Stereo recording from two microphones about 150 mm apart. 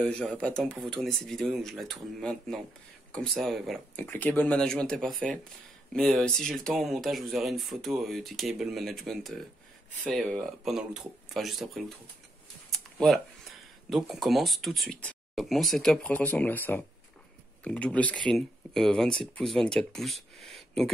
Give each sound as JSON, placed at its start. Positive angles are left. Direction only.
{"t": 0.0, "sound": "speech", "side_deg": 5}
{"t": 4.0, "sound": "speech", "side_deg": 15}